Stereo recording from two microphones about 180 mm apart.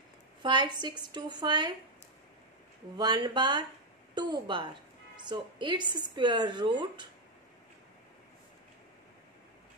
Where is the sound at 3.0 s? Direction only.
25° right (ahead or behind).